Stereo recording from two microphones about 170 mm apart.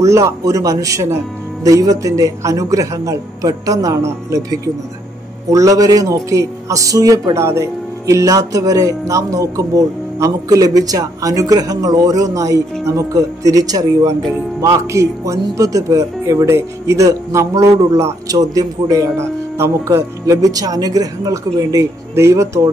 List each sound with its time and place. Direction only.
0.0 s speech: 20° right (ahead or behind)